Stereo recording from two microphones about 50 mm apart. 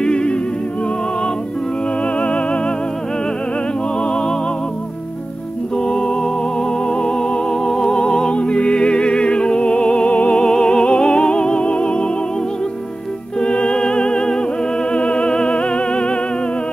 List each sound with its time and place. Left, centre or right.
0.0 s music: centre
2.1 s music: left
5.9 s music: centre
13.4 s music: centre